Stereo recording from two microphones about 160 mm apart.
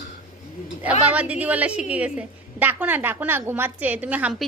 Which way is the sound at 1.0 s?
10° right (ahead or behind).